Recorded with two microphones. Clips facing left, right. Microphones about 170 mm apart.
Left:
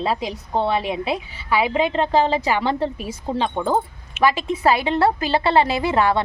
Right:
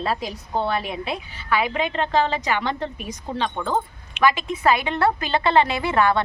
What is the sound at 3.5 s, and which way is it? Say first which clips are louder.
Speech: left 4 dB; 10° left (ahead or behind).